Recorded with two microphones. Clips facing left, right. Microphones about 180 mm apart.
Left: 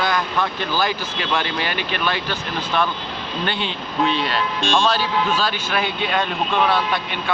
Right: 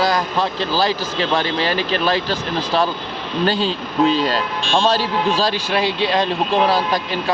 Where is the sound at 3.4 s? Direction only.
35° right (ahead or behind).